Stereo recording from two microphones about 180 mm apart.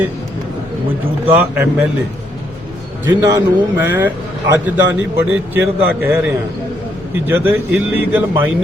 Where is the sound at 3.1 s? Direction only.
15° right (ahead or behind).